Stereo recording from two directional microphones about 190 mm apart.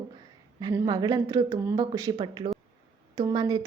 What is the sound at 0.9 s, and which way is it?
A woman's voice, 20° right (ahead or behind).